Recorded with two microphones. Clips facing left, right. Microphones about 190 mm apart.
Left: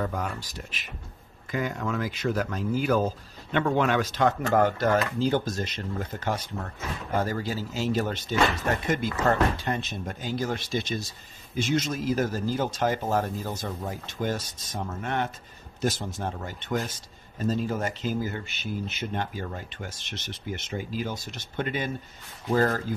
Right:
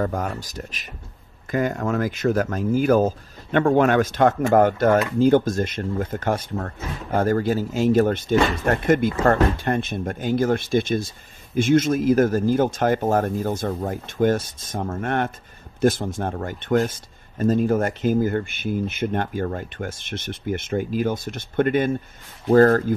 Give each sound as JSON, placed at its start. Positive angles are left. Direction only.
{"t": 0.0, "sound": "speech", "side_deg": -45}